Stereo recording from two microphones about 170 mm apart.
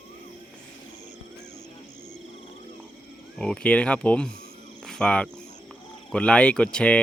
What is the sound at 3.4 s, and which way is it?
Speech, 5° left (ahead or behind).